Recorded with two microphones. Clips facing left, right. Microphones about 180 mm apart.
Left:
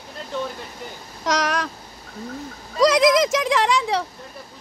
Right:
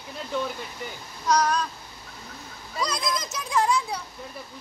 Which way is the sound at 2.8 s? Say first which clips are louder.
Left 14 dB; 90° left.